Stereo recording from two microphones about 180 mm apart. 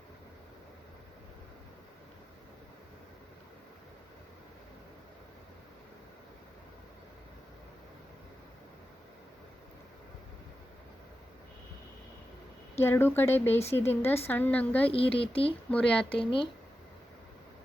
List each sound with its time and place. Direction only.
12.8 s speech: 10° left (ahead or behind)
14.9 s speech: 30° left (ahead or behind)
15.7 s speech: 5° left (ahead or behind)
16.1 s speech: 30° left (ahead or behind)